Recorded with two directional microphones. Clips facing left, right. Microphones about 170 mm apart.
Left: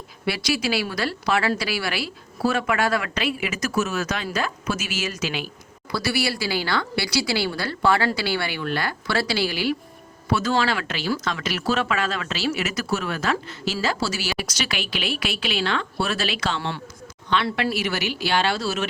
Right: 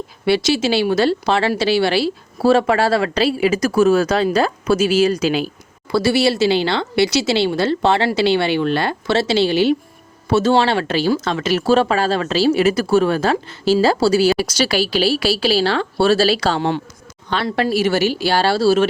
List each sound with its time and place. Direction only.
0.3 s speech: 25° right (ahead or behind)